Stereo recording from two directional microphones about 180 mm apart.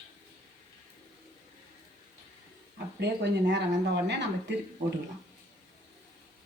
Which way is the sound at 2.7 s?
70° right (ahead or behind).